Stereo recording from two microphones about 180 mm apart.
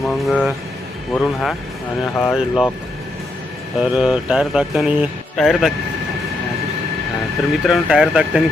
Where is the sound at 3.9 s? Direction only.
5° right (ahead or behind).